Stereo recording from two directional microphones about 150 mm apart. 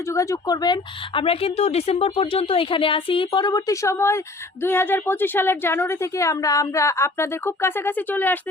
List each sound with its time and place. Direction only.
0.0 s a woman's voice: 20° left (ahead or behind)